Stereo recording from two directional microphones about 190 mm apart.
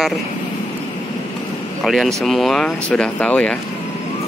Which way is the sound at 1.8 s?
Centre (ahead or behind).